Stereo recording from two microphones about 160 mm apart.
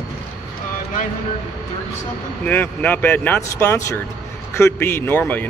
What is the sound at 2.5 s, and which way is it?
A man's voice, 10° left (ahead or behind).